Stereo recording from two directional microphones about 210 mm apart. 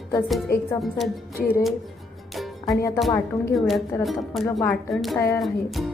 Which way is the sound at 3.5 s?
Centre (ahead or behind).